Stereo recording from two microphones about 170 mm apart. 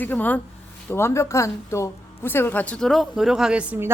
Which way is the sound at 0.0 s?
10° left (ahead or behind).